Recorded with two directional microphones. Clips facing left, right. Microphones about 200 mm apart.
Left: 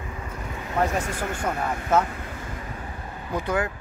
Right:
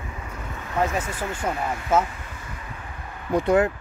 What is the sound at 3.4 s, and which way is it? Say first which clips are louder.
Speech: right 7 dB; 25° right (ahead or behind).